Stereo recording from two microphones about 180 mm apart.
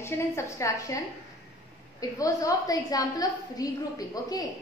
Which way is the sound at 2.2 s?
20° left (ahead or behind).